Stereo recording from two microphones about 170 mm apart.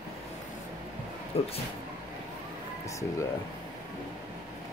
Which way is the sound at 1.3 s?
35° left (ahead or behind).